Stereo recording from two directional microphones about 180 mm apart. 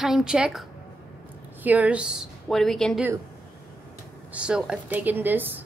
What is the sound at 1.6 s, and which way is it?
Speech, 5° right (ahead or behind).